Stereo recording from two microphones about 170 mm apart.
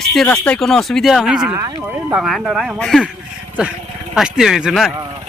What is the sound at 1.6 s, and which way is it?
Speech, 20° right (ahead or behind).